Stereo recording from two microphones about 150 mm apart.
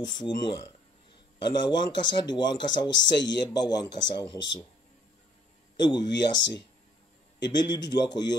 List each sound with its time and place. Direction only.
0.0 s speech: 30° left (ahead or behind)
5.9 s speech: 30° left (ahead or behind)